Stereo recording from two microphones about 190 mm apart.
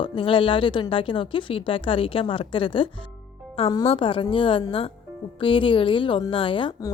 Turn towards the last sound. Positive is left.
turn(degrees=20)  # may be behind; listen again after turning